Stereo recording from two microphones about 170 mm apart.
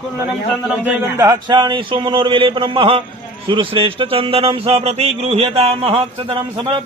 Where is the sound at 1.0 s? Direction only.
20° right (ahead or behind).